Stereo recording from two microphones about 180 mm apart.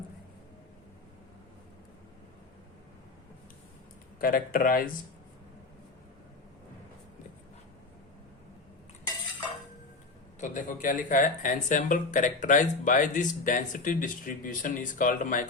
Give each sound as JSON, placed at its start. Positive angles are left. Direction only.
{"t": 4.2, "sound": "speech", "side_deg": 55}
{"t": 10.4, "sound": "speech", "side_deg": 45}